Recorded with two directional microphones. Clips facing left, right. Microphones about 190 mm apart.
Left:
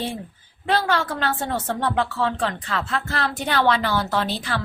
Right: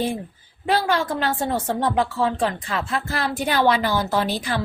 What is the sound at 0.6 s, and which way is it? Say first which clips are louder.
A woman's voice: right 1 dB; 15° right (ahead or behind).